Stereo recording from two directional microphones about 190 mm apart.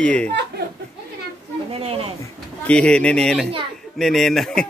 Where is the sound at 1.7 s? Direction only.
30° right (ahead or behind).